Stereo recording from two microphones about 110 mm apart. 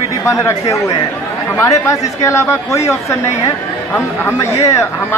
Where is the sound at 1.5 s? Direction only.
30° left (ahead or behind).